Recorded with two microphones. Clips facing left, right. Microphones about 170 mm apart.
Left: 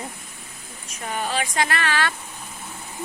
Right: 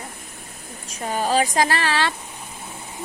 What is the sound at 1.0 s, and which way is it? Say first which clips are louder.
Speech: right 6 dB; 35° right (ahead or behind).